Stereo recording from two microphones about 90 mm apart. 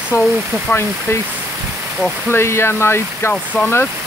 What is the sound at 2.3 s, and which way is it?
Speech, 30° left (ahead or behind).